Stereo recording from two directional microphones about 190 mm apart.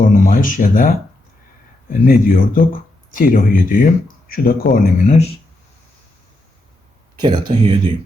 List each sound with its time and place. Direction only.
0.0 s speech: 45° left (ahead or behind)
7.2 s speech: 25° right (ahead or behind)